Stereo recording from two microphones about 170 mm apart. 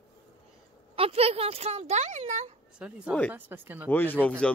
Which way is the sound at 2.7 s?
5° right (ahead or behind).